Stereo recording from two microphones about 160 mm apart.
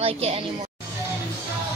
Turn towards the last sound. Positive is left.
turn(degrees=-40)  # may be behind; listen again after turning